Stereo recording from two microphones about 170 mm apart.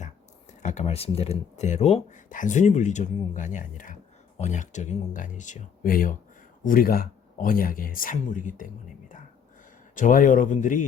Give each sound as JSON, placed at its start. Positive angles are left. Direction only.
{"t": 0.6, "sound": "speech", "side_deg": 45}